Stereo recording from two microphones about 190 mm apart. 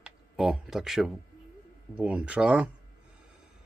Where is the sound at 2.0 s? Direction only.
5° right (ahead or behind).